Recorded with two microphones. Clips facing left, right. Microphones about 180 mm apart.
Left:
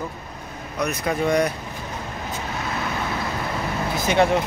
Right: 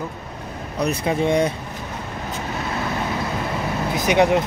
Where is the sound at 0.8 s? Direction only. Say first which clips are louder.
Right 2 dB; 30° right (ahead or behind).